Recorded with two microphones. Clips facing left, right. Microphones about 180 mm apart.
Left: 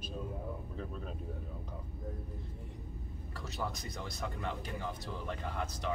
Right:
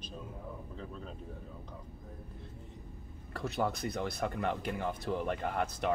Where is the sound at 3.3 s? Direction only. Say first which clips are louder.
Right 7 dB; 60° right (ahead or behind).